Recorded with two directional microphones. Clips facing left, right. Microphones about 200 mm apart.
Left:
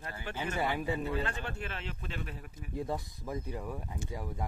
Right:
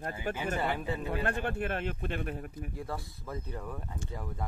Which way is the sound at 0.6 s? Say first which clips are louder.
Even; 10° left (ahead or behind).